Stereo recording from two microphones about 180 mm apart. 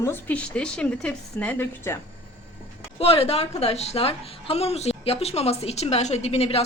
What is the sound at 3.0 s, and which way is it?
A woman's voice, 35° left (ahead or behind).